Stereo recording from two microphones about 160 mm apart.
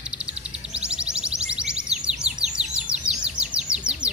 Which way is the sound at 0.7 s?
5° right (ahead or behind).